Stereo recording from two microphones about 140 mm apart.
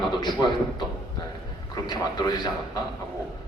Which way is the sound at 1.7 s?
30° left (ahead or behind).